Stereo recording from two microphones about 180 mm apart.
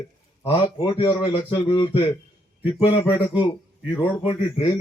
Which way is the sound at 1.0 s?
15° left (ahead or behind).